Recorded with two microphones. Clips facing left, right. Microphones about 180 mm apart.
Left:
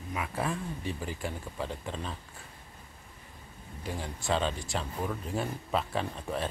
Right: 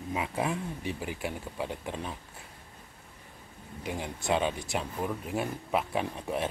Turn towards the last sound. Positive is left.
turn(degrees=-15)  # may be behind; listen again after turning